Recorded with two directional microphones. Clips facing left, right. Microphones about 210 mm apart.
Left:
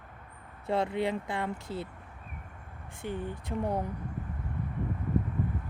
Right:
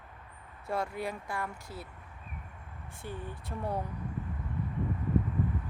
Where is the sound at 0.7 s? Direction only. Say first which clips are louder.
Left 5 dB; 25° left (ahead or behind).